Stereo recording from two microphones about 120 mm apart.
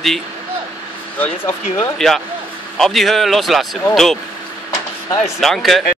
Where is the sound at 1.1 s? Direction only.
15° left (ahead or behind).